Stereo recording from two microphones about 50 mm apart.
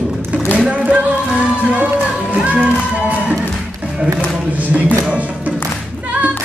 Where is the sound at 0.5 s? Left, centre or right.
Centre.